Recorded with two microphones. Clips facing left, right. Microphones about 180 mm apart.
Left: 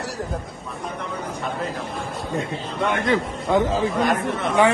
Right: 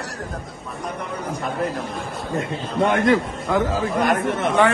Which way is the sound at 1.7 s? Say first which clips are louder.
Right 1 dB; centre (ahead or behind).